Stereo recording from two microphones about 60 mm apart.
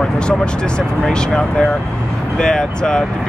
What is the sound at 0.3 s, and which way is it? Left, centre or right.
Speech, centre.